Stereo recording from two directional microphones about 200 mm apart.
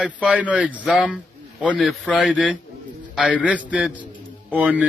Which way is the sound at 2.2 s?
5° right (ahead or behind).